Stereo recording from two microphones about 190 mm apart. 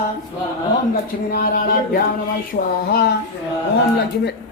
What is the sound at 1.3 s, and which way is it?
Speech, 50° left (ahead or behind).